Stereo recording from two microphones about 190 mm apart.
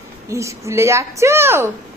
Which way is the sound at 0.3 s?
15° right (ahead or behind).